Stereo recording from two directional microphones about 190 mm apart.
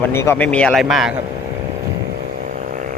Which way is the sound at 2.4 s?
45° right (ahead or behind).